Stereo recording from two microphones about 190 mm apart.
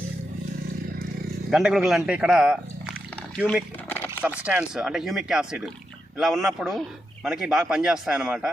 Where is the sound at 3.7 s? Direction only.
10° left (ahead or behind).